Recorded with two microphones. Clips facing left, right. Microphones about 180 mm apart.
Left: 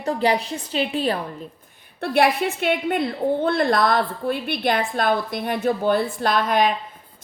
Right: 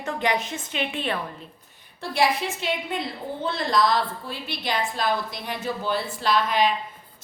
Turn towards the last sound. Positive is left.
turn(degrees=50)  # may be behind; listen again after turning